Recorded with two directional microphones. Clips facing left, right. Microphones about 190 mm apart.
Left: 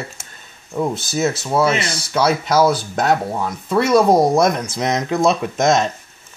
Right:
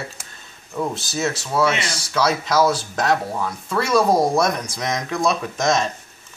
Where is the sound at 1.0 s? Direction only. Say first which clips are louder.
Left 5 dB; centre (ahead or behind).